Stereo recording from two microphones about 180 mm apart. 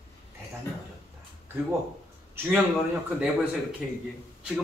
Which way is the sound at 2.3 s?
10° right (ahead or behind).